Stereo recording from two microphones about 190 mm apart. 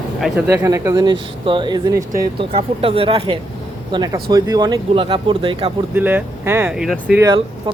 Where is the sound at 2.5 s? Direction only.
30° right (ahead or behind).